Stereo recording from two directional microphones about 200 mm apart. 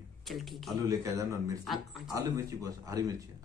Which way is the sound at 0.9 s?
15° right (ahead or behind).